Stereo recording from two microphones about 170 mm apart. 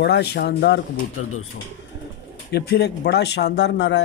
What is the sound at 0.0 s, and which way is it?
Speech, 85° left.